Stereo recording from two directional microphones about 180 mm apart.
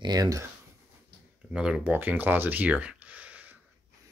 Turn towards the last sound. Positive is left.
turn(degrees=-10)  # may be behind; listen again after turning